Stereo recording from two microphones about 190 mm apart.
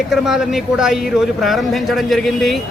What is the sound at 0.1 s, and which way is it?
A man's voice, centre (ahead or behind).